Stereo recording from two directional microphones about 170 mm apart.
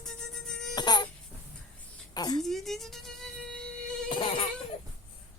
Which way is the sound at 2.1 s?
25° left (ahead or behind).